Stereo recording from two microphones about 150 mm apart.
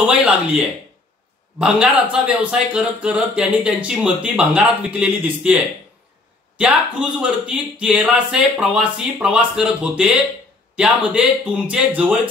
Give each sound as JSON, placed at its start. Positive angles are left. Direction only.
{"t": 0.0, "sound": "speech", "side_deg": -5}
{"t": 6.6, "sound": "speech", "side_deg": -5}